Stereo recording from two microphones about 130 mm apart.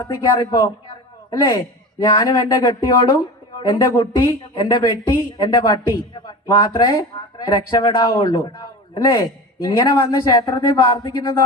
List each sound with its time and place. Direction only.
0.0 s speech: 25° left (ahead or behind)
9.6 s speech: 30° left (ahead or behind)